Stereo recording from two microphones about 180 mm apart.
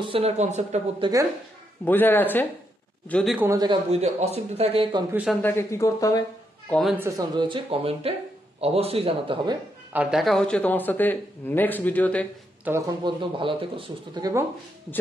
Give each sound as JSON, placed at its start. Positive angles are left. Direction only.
{"t": 0.0, "sound": "speech", "side_deg": -30}
{"t": 1.0, "sound": "speech", "side_deg": -25}
{"t": 1.9, "sound": "a man's voice", "side_deg": 10}
{"t": 3.3, "sound": "speech", "side_deg": -20}
{"t": 3.9, "sound": "speech", "side_deg": -35}
{"t": 5.1, "sound": "speech", "side_deg": -5}
{"t": 5.4, "sound": "a man's voice", "side_deg": 15}
{"t": 6.7, "sound": "speech", "side_deg": 0}
{"t": 7.0, "sound": "speech", "side_deg": -20}
{"t": 9.9, "sound": "a man's voice", "side_deg": 0}
{"t": 12.7, "sound": "speech", "side_deg": -10}
{"t": 13.0, "sound": "speech", "side_deg": -30}